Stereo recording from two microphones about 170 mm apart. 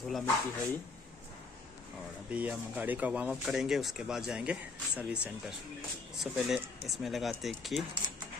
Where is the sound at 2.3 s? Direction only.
10° right (ahead or behind).